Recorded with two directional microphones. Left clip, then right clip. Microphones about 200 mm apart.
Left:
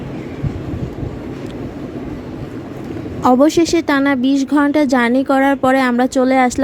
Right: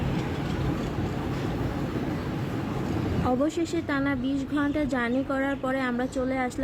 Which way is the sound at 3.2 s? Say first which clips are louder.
Left 16 dB; 45° left (ahead or behind).